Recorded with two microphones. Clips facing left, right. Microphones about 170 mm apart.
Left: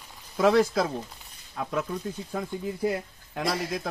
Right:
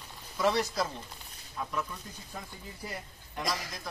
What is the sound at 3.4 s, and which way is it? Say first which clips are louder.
Speech: left 7 dB; 30° left (ahead or behind).